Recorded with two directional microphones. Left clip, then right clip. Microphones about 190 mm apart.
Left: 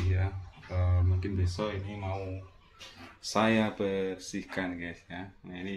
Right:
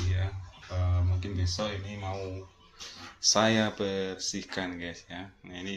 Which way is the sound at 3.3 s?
Centre (ahead or behind).